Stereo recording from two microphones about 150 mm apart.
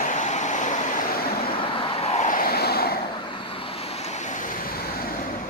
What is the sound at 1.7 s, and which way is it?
Vehicle, 35° left (ahead or behind).